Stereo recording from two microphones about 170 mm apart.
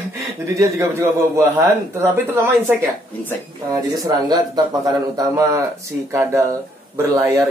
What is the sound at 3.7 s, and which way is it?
A man's voice, 20° right (ahead or behind).